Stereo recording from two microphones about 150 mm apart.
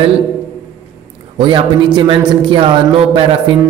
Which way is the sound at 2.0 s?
35° right (ahead or behind).